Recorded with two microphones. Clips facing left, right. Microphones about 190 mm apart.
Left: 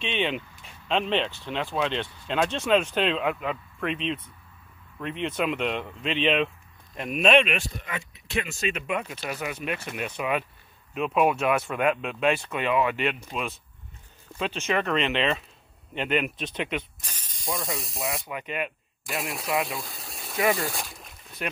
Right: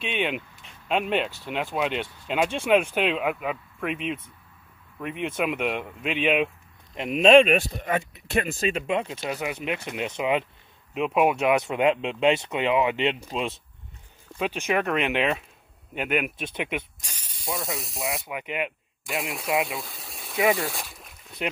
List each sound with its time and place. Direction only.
0.0 s speech: 10° right (ahead or behind)
7.0 s speech: 25° right (ahead or behind)
7.4 s speech: 40° right (ahead or behind); by 13.6 s 25° right (ahead or behind)
14.4 s speech: 10° right (ahead or behind)
18.3 s speech: 15° right (ahead or behind)
19.1 s speech: centre (ahead or behind)
19.7 s pump: centre (ahead or behind)
20.3 s speech: 10° right (ahead or behind)
21.4 s speech: 15° right (ahead or behind)